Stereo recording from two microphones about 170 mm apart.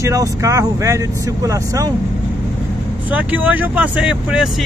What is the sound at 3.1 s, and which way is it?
Speech, 10° right (ahead or behind).